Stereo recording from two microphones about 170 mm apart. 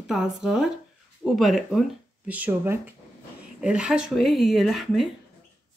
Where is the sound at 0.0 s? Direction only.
Centre (ahead or behind).